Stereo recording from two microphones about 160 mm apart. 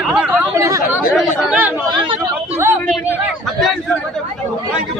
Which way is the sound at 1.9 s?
30° right (ahead or behind).